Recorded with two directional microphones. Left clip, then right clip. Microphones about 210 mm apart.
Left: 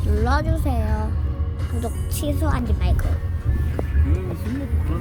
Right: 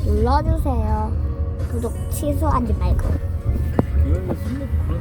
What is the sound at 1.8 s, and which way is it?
A woman's voice, 15° left (ahead or behind).